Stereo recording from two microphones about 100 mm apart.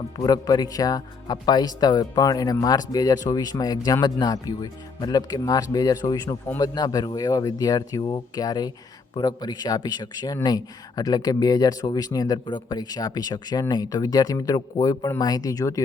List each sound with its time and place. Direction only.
0.2 s a man's voice: 40° left (ahead or behind)